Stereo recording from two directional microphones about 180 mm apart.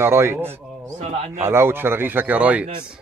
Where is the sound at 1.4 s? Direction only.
15° right (ahead or behind).